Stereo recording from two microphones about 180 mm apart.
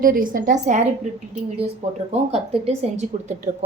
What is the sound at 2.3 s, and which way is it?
A woman's voice, 35° right (ahead or behind).